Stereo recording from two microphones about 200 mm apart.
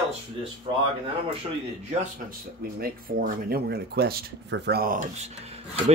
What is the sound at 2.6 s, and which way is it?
Speech, 45° right (ahead or behind).